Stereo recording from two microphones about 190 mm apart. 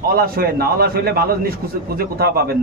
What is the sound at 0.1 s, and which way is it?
Speech, 55° right (ahead or behind).